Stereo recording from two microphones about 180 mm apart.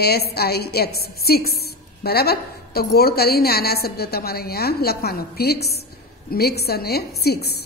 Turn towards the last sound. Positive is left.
turn(degrees=60)  # may be behind; listen again after turning